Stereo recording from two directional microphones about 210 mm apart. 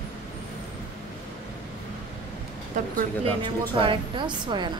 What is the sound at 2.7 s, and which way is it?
Speech, 40° right (ahead or behind).